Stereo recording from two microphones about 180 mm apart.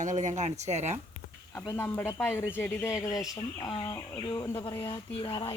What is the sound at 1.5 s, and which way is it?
Speech, 15° left (ahead or behind).